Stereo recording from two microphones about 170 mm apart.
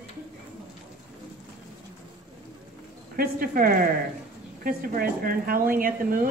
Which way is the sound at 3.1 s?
60° right (ahead or behind).